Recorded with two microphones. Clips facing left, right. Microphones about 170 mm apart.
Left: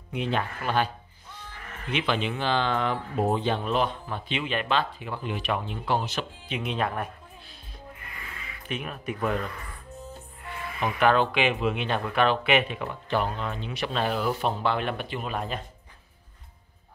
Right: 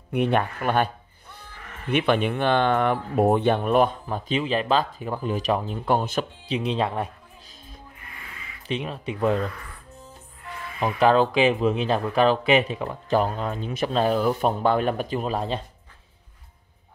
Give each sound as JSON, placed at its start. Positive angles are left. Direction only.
{"t": 0.1, "sound": "speech", "side_deg": -60}
{"t": 6.4, "sound": "speech", "side_deg": -35}
{"t": 8.6, "sound": "speech", "side_deg": -30}
{"t": 10.8, "sound": "speech", "side_deg": -35}